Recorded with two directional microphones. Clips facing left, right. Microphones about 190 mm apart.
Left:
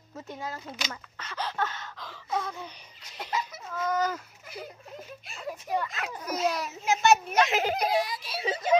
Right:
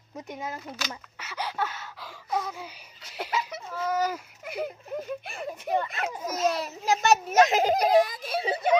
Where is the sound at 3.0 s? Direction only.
70° right (ahead or behind).